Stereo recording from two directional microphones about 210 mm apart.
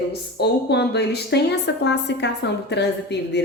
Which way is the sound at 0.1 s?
50° left (ahead or behind).